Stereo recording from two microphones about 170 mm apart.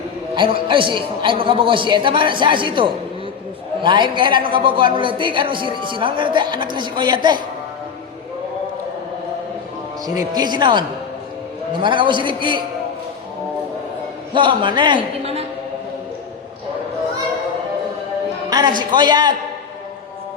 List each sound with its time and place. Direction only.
0.3 s a woman's voice: 30° right (ahead or behind)
10.2 s a woman's voice: 25° right (ahead or behind)
14.3 s a woman's voice: 30° right (ahead or behind)
18.5 s a woman's voice: 25° right (ahead or behind)